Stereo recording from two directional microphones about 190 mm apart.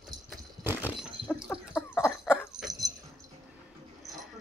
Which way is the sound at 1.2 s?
25° right (ahead or behind).